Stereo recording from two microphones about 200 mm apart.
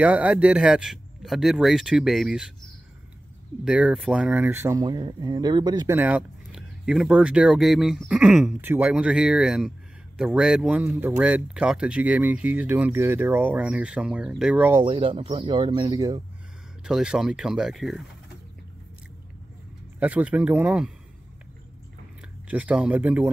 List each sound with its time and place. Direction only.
0.0 s speech: 5° right (ahead or behind)
3.6 s speech: 5° right (ahead or behind); by 5.9 s 20° right (ahead or behind)
5.9 s speech: 5° right (ahead or behind)
14.8 s speech: 25° right (ahead or behind)
16.8 s speech: 5° right (ahead or behind)
20.0 s speech: 5° right (ahead or behind)
22.5 s speech: 5° right (ahead or behind)